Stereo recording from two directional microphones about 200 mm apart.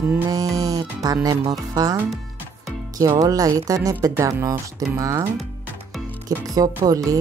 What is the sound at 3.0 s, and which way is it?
Speech, 15° right (ahead or behind).